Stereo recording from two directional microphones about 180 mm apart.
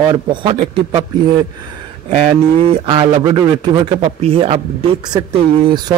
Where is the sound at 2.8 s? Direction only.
25° right (ahead or behind).